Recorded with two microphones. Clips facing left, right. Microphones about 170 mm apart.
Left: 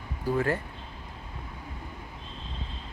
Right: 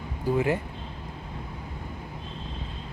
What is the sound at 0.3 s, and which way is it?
Speech, 15° right (ahead or behind).